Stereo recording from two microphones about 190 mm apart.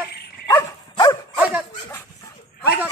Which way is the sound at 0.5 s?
20° left (ahead or behind).